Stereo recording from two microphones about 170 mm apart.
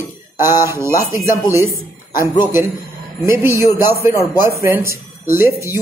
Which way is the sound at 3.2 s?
15° right (ahead or behind).